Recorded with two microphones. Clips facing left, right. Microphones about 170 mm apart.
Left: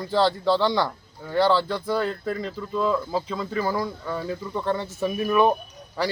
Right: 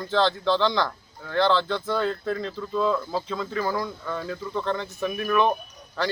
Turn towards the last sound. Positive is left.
turn(degrees=10)  # may be behind; listen again after turning